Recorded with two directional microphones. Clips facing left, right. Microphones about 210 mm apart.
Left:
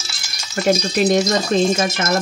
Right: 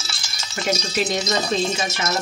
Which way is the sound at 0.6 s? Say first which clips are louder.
Left 7 dB; 45° left (ahead or behind).